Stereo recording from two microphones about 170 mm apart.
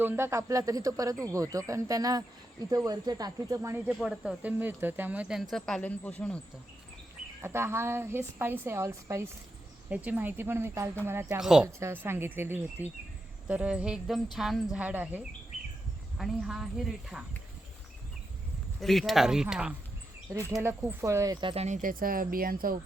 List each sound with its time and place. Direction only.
0.0 s speech: 15° right (ahead or behind)
3.8 s speech: 5° right (ahead or behind)
7.4 s a woman's voice: 15° right (ahead or behind)
11.3 s speech: 5° right (ahead or behind)
11.8 s a woman's voice: 15° right (ahead or behind)
18.8 s a woman's voice: centre (ahead or behind); by 21.3 s 15° right (ahead or behind)
21.4 s speech: 35° right (ahead or behind)
21.8 s speech: 55° right (ahead or behind)